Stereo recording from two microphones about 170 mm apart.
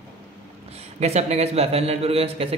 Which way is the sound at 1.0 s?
40° right (ahead or behind).